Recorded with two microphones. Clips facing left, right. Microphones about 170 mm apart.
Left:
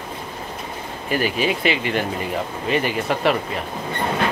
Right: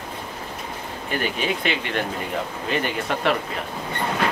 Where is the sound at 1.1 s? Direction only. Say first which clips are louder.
Left 4 dB; 5° left (ahead or behind).